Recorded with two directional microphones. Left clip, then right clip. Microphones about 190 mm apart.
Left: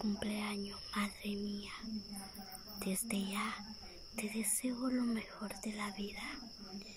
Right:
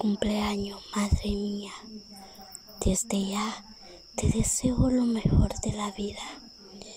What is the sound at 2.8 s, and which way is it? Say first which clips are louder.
Whispering: right 12 dB; 30° right (ahead or behind).